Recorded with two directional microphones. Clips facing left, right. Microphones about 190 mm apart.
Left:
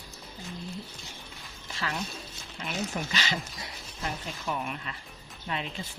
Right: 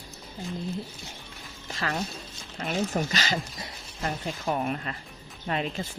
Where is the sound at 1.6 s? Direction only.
45° right (ahead or behind).